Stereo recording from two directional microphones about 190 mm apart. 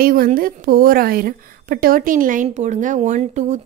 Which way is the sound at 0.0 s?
50° right (ahead or behind).